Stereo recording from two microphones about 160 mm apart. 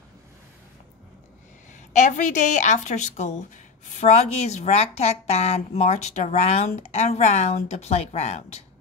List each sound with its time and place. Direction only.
2.0 s a woman's voice: 50° left (ahead or behind)